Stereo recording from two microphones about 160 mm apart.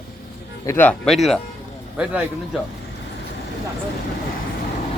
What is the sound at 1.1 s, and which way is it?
Speech, centre (ahead or behind).